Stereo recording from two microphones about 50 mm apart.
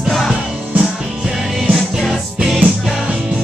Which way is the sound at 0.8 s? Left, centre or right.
Centre.